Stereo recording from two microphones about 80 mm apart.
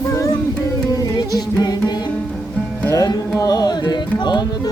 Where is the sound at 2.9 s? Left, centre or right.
Left.